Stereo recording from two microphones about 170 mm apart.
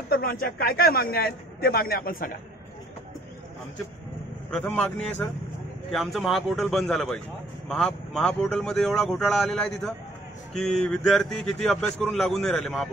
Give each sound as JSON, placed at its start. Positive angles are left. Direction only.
{"t": 0.1, "sound": "a man's voice", "side_deg": 60}
{"t": 4.5, "sound": "a man's voice", "side_deg": 10}